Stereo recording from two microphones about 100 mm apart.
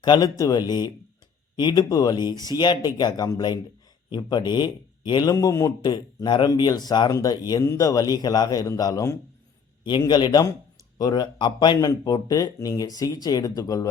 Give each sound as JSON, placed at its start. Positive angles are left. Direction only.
{"t": 0.0, "sound": "speech", "side_deg": 45}
{"t": 5.3, "sound": "speech", "side_deg": 35}